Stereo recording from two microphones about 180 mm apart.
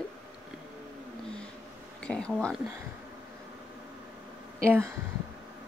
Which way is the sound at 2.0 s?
5° left (ahead or behind).